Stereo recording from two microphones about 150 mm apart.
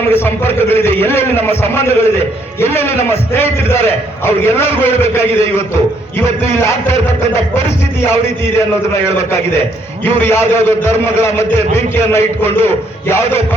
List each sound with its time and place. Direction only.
0.1 s a man's voice: 15° left (ahead or behind)
10.0 s a man's voice: 15° left (ahead or behind)